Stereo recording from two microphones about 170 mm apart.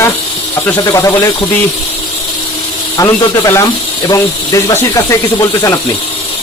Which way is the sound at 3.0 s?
20° left (ahead or behind).